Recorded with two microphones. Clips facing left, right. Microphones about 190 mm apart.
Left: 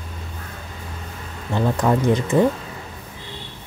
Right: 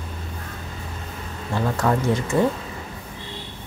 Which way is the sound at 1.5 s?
20° left (ahead or behind).